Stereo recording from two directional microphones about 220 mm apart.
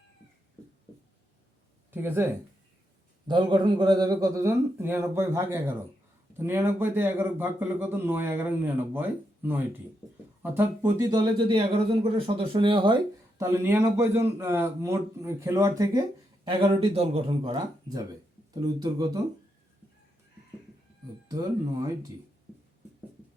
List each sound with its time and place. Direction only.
1.9 s a man's voice: 10° right (ahead or behind)